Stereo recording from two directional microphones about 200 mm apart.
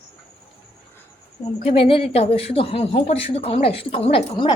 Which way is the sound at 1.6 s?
30° left (ahead or behind).